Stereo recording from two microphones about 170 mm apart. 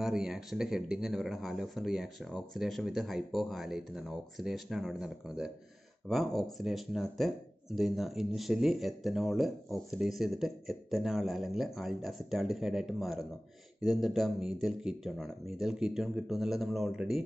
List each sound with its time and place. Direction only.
0.0 s speech: 5° right (ahead or behind)